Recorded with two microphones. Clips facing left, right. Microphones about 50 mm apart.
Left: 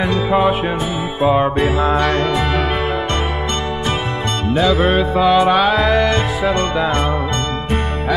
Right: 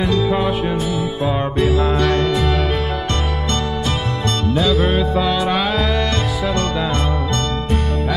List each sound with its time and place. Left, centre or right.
0.0 s music: centre
5.1 s music: left